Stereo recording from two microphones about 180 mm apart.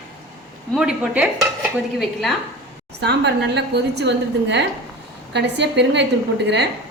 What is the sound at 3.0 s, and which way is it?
A woman's voice, 70° right (ahead or behind).